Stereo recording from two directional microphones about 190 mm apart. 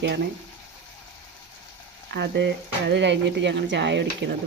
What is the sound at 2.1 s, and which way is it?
Speech, 65° right (ahead or behind).